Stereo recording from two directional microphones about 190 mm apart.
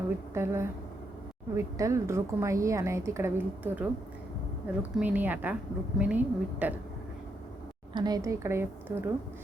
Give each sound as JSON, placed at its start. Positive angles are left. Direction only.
{"t": 0.3, "sound": "a woman's voice", "side_deg": -15}
{"t": 7.9, "sound": "a woman's voice", "side_deg": -20}